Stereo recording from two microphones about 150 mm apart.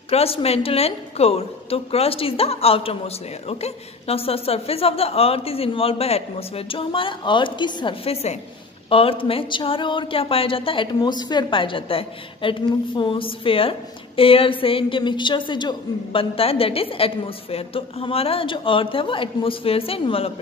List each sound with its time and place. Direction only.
0.1 s speech: 40° left (ahead or behind)